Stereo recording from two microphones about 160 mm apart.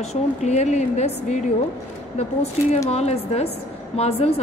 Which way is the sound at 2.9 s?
40° left (ahead or behind).